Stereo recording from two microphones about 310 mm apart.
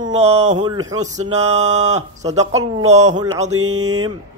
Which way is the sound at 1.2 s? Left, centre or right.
Right.